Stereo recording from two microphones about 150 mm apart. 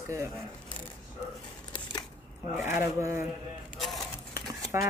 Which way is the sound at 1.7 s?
25° left (ahead or behind).